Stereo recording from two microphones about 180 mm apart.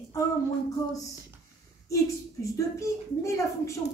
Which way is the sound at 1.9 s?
15° left (ahead or behind).